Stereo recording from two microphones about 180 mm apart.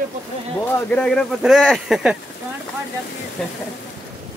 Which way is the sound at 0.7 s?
5° left (ahead or behind).